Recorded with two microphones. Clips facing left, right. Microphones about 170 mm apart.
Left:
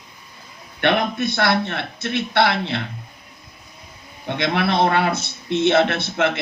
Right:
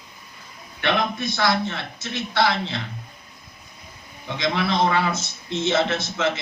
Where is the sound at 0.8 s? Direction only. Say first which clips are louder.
Left 4 dB; 65° left (ahead or behind).